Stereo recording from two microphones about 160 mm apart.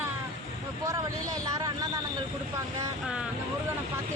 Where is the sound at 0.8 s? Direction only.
20° right (ahead or behind).